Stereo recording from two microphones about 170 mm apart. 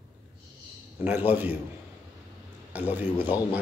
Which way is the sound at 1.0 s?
10° right (ahead or behind).